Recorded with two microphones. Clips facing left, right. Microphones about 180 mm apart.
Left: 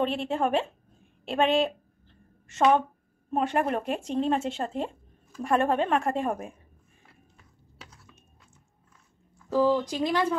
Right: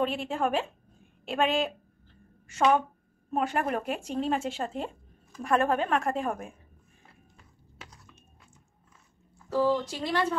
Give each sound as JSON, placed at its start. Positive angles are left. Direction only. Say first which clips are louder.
{"t": 0.0, "sound": "speech", "louder": "left 2 dB", "side_deg": 0}
{"t": 3.3, "sound": "speech", "louder": "left 2 dB", "side_deg": 0}
{"t": 9.5, "sound": "speech", "louder": "left 3 dB", "side_deg": 15}